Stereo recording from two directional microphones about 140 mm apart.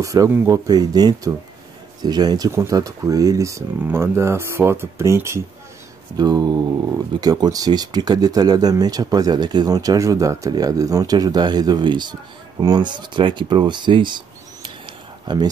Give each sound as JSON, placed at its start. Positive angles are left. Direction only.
{"t": 0.0, "sound": "speech", "side_deg": -25}